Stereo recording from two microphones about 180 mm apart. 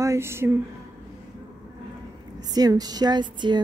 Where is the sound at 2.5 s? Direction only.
20° right (ahead or behind).